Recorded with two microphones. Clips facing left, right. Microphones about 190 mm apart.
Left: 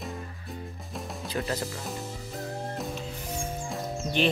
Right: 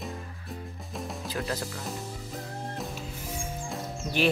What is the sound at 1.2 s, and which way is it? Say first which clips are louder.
Speech: left 3 dB; centre (ahead or behind).